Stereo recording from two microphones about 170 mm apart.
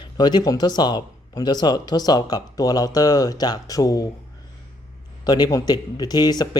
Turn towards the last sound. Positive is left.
turn(degrees=25)  # may be behind; listen again after turning